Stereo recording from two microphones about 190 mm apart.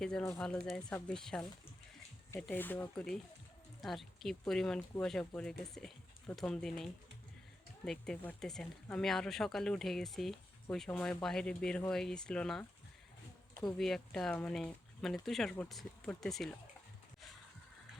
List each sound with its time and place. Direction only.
0.0 s speech: 10° left (ahead or behind)
7.9 s speech: 5° left (ahead or behind)
13.7 s speech: centre (ahead or behind)